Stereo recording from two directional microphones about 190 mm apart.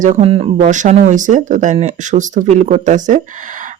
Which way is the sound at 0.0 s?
35° right (ahead or behind).